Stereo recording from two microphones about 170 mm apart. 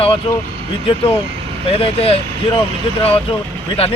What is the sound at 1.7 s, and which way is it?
Speech, 35° left (ahead or behind).